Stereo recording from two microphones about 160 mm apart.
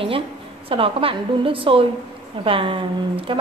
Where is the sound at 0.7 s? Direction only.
35° right (ahead or behind).